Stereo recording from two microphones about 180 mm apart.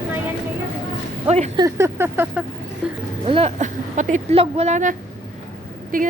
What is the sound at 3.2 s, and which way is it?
Speech, 35° right (ahead or behind).